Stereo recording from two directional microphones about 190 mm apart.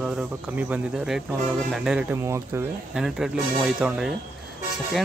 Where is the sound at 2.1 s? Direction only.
15° right (ahead or behind).